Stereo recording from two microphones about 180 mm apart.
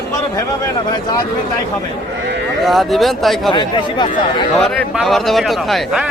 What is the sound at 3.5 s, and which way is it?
Speech, 25° left (ahead or behind).